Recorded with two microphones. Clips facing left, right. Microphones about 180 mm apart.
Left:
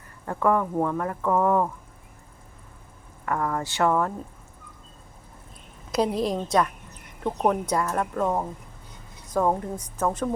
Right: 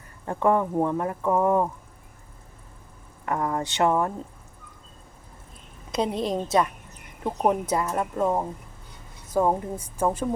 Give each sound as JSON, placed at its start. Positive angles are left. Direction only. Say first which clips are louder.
{"t": 0.3, "sound": "speech", "louder": "right 1 dB", "side_deg": -20}
{"t": 3.2, "sound": "speech", "louder": "even", "side_deg": -20}
{"t": 5.9, "sound": "a woman's voice", "louder": "left 1 dB", "side_deg": 0}